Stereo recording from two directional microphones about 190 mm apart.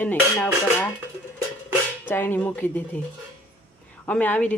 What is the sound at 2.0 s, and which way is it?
Speech, 10° left (ahead or behind).